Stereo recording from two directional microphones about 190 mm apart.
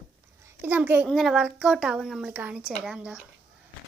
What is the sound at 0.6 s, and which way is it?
A woman's voice, 10° right (ahead or behind).